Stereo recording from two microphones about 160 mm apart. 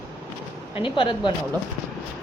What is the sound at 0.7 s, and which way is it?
Speech, 30° left (ahead or behind).